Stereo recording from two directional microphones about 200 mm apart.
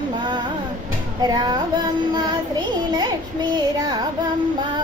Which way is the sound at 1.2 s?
20° right (ahead or behind).